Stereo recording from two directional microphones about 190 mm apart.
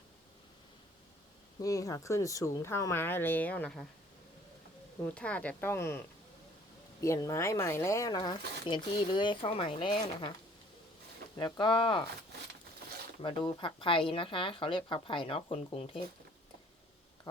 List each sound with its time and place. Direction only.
1.6 s speech: 20° left (ahead or behind)
5.0 s speech: 5° left (ahead or behind)
7.0 s speech: 15° left (ahead or behind)
11.3 s speech: 25° left (ahead or behind)
13.2 s speech: 25° left (ahead or behind)